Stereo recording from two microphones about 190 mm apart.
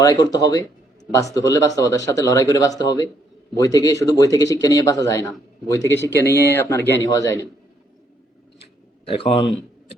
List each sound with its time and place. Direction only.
0.0 s speech: 20° left (ahead or behind)
9.0 s speech: 30° left (ahead or behind)